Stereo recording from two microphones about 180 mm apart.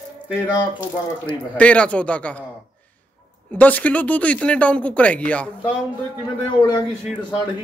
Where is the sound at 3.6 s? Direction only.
10° left (ahead or behind).